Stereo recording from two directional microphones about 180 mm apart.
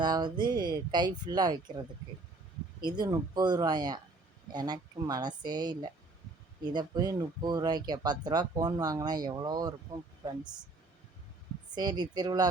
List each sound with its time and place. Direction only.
0.0 s speech: 25° right (ahead or behind)
2.8 s speech: 25° right (ahead or behind)
11.7 s speech: 25° right (ahead or behind)